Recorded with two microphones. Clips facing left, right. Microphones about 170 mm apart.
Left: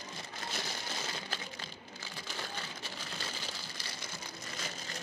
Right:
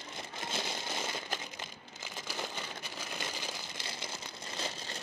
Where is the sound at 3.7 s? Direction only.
25° right (ahead or behind).